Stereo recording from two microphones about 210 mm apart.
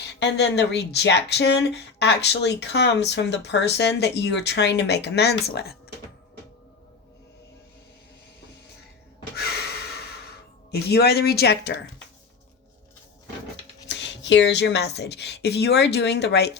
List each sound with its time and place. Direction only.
0.2 s speech: 55° left (ahead or behind)
9.3 s gasp: 50° left (ahead or behind)
10.7 s speech: 50° left (ahead or behind)
13.8 s speech: 60° left (ahead or behind)